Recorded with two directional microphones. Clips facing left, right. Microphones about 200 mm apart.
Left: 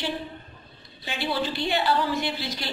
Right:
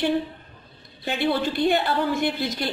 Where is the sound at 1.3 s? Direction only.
50° right (ahead or behind).